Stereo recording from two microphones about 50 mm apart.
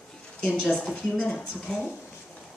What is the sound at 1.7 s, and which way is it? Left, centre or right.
Speech, centre.